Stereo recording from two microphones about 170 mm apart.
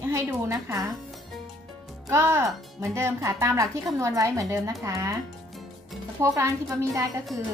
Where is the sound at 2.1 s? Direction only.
15° right (ahead or behind).